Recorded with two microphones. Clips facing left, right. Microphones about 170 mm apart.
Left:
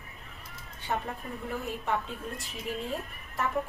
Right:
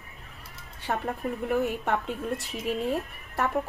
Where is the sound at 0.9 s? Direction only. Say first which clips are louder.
Right 4 dB; 65° right (ahead or behind).